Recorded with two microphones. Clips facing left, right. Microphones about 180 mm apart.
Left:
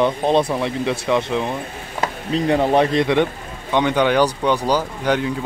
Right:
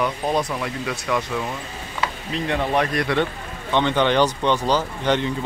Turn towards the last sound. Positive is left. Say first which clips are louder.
# left 1 dB
turn(degrees=10)  # may be behind; listen again after turning